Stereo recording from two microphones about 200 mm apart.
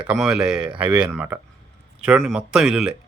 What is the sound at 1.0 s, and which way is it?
A man's voice, 10° right (ahead or behind).